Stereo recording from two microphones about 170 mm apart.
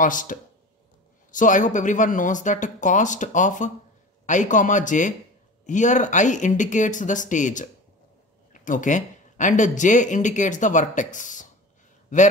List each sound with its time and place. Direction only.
0.0 s speech: 50° left (ahead or behind)